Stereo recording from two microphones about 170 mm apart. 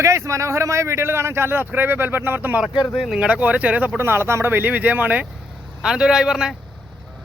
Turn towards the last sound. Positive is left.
turn(degrees=-5)  # may be behind; listen again after turning